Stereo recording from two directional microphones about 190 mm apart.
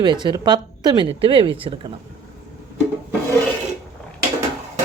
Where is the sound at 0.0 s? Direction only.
25° right (ahead or behind).